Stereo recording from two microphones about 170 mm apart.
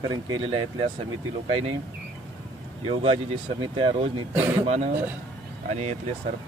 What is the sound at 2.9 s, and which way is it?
Speech, 35° right (ahead or behind).